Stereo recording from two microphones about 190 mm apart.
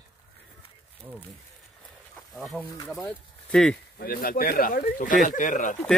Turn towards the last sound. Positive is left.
turn(degrees=40)  # may be behind; listen again after turning